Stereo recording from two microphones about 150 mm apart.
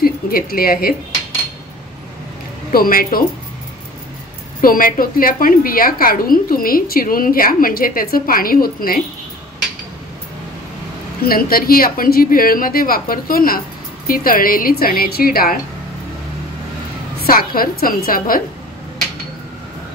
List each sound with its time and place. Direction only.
0.0 s speech: 75° left (ahead or behind)
2.7 s a woman's voice: 75° left (ahead or behind)
4.6 s a woman's voice: 70° left (ahead or behind)
11.2 s a woman's voice: 80° left
17.2 s a woman's voice: 75° left (ahead or behind)